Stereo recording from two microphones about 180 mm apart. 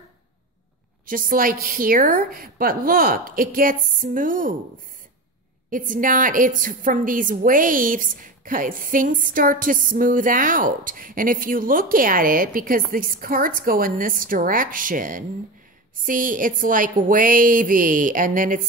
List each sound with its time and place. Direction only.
1.0 s a woman's voice: 50° right (ahead or behind)
5.7 s a woman's voice: 50° right (ahead or behind)